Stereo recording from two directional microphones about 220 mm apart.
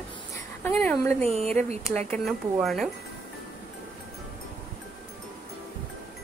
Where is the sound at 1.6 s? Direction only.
30° right (ahead or behind).